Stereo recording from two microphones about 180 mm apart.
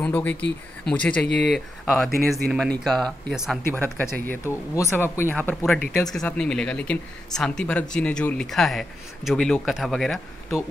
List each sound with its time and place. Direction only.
0.0 s speech: 10° left (ahead or behind)
3.6 s speech: 10° left (ahead or behind)